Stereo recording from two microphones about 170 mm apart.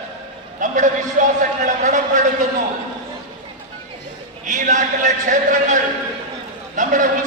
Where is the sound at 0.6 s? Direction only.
50° right (ahead or behind).